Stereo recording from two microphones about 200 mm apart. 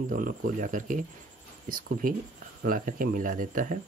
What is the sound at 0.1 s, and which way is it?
Speech, 40° right (ahead or behind).